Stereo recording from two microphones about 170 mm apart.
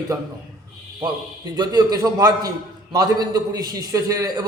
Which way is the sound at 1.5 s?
20° right (ahead or behind).